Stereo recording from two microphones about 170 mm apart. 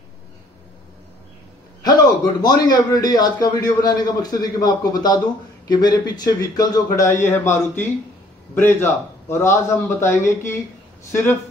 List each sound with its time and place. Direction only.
2.4 s a man's voice: 25° left (ahead or behind)